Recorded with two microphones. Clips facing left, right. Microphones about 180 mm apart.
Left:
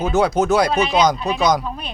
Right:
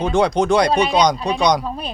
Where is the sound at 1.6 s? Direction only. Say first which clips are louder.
Right 2 dB; 35° right (ahead or behind).